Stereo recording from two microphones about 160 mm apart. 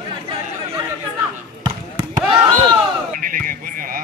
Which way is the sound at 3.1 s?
60° right (ahead or behind).